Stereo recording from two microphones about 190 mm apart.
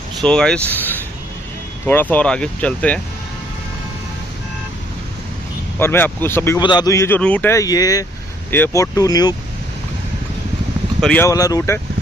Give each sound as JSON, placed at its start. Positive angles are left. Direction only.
{"t": 0.2, "sound": "speech", "side_deg": 5}
{"t": 5.8, "sound": "speech", "side_deg": 10}
{"t": 11.0, "sound": "speech", "side_deg": 5}
{"t": 11.2, "sound": "speech", "side_deg": 20}